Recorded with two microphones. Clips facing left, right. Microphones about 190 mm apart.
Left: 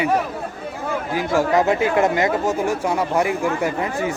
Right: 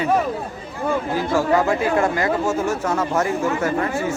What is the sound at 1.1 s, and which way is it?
Speech, 20° left (ahead or behind).